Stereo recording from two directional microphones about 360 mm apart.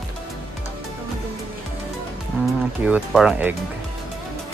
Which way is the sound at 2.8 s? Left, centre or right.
Centre.